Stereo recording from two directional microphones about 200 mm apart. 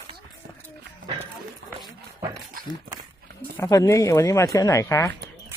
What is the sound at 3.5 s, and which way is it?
Speech, 15° left (ahead or behind).